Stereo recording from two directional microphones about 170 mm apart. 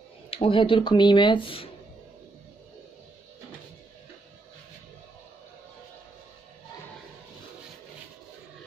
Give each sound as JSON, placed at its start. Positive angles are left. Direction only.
{"t": 0.3, "sound": "speech", "side_deg": 30}